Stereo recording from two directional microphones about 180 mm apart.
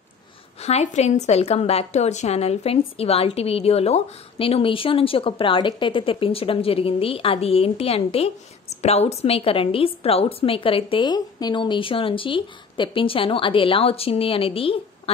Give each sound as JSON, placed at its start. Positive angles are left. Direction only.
{"t": 0.6, "sound": "a woman's voice", "side_deg": 35}